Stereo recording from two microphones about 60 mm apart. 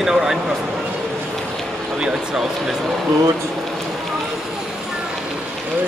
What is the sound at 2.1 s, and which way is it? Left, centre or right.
Speech, centre.